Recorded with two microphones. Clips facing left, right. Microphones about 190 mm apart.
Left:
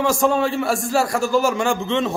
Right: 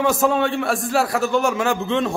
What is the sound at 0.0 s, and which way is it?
Speech, centre (ahead or behind).